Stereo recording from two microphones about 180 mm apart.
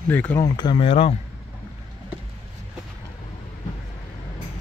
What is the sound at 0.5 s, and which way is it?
Speech, 30° left (ahead or behind).